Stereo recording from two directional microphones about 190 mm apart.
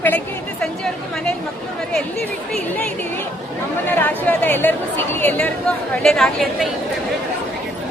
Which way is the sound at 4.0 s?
10° left (ahead or behind).